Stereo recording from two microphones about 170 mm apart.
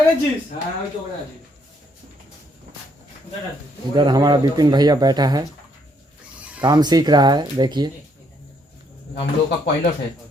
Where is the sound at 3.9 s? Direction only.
25° right (ahead or behind).